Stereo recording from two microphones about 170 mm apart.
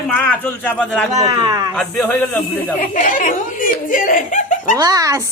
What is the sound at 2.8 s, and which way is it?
Speech, 50° left (ahead or behind).